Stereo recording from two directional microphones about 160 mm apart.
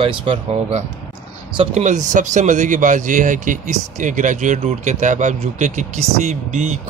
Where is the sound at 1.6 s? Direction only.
45° right (ahead or behind).